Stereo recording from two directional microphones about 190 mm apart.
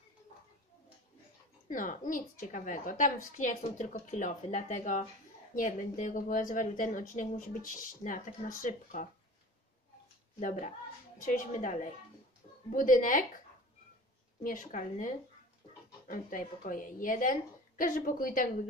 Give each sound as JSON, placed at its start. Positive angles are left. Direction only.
{"t": 1.7, "sound": "a woman's voice", "side_deg": 45}
{"t": 10.4, "sound": "a woman's voice", "side_deg": 40}
{"t": 14.4, "sound": "a woman's voice", "side_deg": 45}